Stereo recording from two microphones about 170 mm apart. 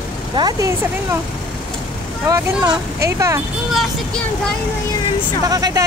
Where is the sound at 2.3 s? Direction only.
20° right (ahead or behind).